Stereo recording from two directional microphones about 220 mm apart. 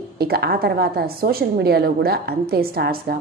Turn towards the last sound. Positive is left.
turn(degrees=-45)  # may be behind; listen again after turning